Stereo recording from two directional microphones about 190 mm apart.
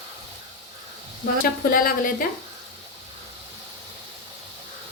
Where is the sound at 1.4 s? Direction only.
50° left (ahead or behind).